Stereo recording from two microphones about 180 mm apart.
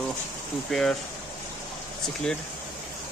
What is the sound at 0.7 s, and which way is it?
Speech, centre (ahead or behind).